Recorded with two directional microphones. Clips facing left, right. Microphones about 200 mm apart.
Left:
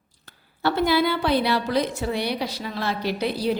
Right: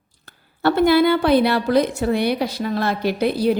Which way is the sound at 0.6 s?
50° right (ahead or behind).